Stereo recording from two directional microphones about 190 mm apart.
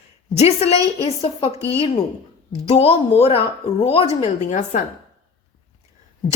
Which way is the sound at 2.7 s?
30° left (ahead or behind).